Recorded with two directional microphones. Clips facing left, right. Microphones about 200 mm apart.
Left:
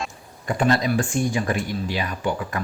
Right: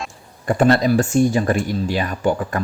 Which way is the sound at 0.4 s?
45° right (ahead or behind).